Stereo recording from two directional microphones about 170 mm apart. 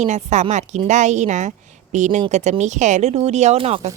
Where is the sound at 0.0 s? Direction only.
45° right (ahead or behind).